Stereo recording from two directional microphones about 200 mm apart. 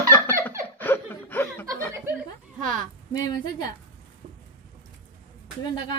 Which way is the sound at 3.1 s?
20° left (ahead or behind).